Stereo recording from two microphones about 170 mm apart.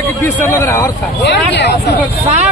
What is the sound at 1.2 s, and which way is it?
Speech, 90° left.